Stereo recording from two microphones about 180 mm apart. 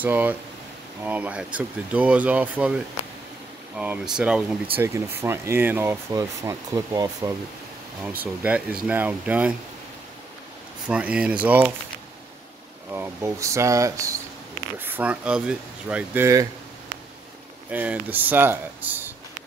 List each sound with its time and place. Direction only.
0.0 s speech: 10° right (ahead or behind)
10.9 s speech: 5° right (ahead or behind)
12.9 s speech: 15° right (ahead or behind)
17.6 s speech: 10° right (ahead or behind)